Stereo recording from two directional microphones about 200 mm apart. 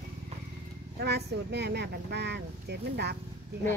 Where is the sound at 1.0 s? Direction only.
55° right (ahead or behind).